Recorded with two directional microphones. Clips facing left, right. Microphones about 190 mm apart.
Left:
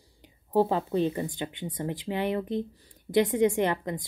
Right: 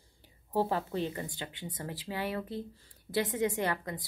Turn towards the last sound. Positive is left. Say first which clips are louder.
# left 6 dB
turn(degrees=20)  # may be behind; listen again after turning